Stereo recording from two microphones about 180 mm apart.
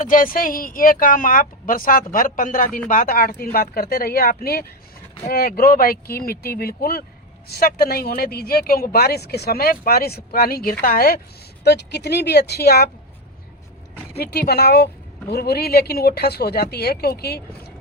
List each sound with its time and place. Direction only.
0.0 s speech: 50° left (ahead or behind)
11.6 s speech: 65° left (ahead or behind)
14.2 s speech: 65° left (ahead or behind)